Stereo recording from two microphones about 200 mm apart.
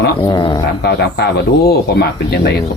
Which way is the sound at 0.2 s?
20° left (ahead or behind).